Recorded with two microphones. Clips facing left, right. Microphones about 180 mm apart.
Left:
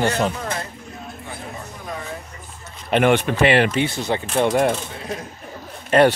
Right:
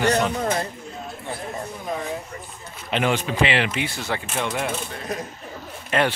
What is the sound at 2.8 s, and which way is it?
Speech, 55° left (ahead or behind).